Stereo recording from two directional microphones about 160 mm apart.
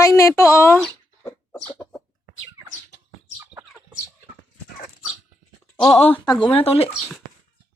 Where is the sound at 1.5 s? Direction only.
5° left (ahead or behind).